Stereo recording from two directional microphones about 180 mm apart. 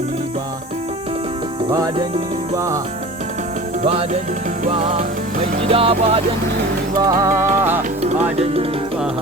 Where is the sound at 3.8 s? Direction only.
35° right (ahead or behind).